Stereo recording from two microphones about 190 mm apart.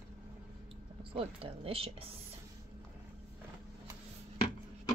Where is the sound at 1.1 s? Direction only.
30° right (ahead or behind).